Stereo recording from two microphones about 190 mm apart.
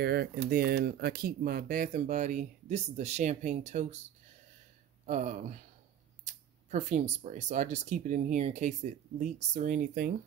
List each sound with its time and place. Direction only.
0.0 s speech: 55° right (ahead or behind); by 4.0 s 35° right (ahead or behind)
5.0 s speech: 40° right (ahead or behind)